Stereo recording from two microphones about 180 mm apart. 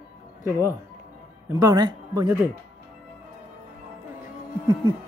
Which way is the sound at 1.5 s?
20° right (ahead or behind).